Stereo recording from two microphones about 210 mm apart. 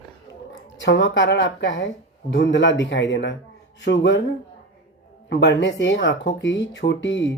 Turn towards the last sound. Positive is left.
turn(degrees=60)  # may be behind; listen again after turning